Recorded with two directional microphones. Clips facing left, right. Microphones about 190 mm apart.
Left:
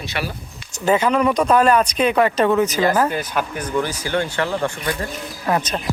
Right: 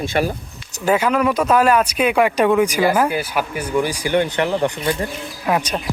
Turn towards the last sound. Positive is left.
turn(degrees=-10)  # may be behind; listen again after turning